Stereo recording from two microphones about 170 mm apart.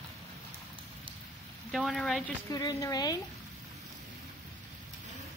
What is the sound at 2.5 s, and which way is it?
Speech, 20° left (ahead or behind).